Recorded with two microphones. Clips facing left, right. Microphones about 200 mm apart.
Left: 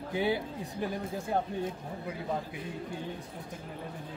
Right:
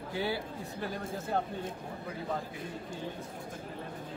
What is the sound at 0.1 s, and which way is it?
Speech, 20° left (ahead or behind).